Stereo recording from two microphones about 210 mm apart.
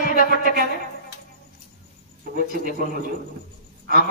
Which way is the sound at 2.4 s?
45° right (ahead or behind).